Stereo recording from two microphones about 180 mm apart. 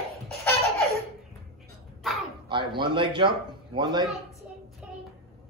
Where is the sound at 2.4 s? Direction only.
25° right (ahead or behind).